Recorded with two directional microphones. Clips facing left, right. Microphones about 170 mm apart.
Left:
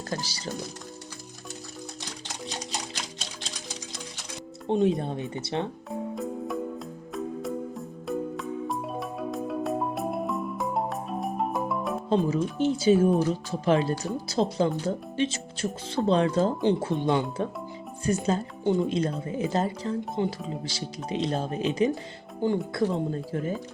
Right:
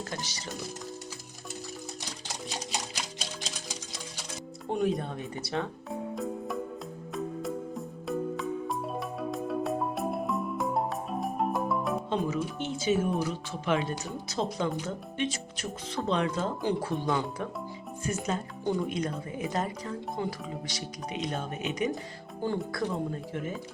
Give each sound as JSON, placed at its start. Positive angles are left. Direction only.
{"t": 0.1, "sound": "speech", "side_deg": 35}
{"t": 4.7, "sound": "speech", "side_deg": 25}
{"t": 5.9, "sound": "music", "side_deg": 0}
{"t": 12.0, "sound": "speech", "side_deg": 35}
{"t": 16.6, "sound": "speech", "side_deg": 25}
{"t": 18.0, "sound": "speech", "side_deg": 35}
{"t": 22.4, "sound": "speech", "side_deg": 20}